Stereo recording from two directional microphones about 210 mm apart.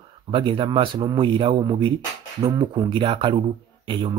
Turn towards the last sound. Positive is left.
turn(degrees=-25)  # may be behind; listen again after turning